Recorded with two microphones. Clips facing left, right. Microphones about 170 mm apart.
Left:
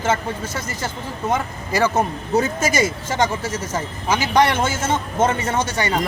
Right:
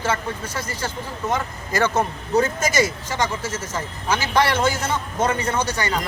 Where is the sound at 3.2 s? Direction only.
20° left (ahead or behind).